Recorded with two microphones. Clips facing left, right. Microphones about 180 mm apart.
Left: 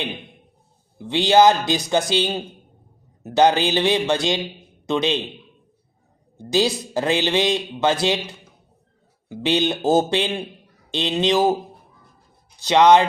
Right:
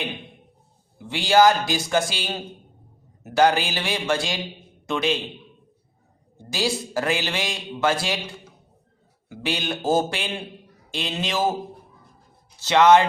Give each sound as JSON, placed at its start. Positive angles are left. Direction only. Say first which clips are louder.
{"t": 0.9, "sound": "a man's voice", "louder": "left 3 dB", "side_deg": 20}
{"t": 6.3, "sound": "a man's voice", "louder": "left 6 dB", "side_deg": 20}
{"t": 12.5, "sound": "speech", "louder": "left 2 dB", "side_deg": 15}